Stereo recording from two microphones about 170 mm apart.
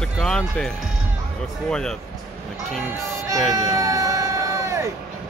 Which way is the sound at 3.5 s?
20° right (ahead or behind).